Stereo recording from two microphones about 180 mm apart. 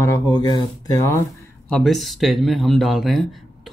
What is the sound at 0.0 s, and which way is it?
Speech, 20° left (ahead or behind).